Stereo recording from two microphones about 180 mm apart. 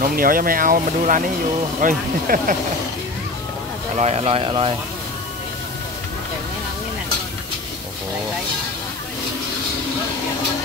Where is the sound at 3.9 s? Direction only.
35° right (ahead or behind).